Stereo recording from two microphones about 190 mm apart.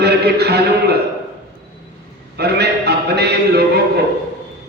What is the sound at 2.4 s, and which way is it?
Speech, 60° right (ahead or behind).